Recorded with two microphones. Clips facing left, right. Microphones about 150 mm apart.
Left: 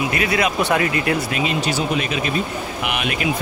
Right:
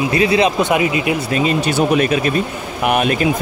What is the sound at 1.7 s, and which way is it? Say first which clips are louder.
Speech: right 7 dB; 55° right (ahead or behind).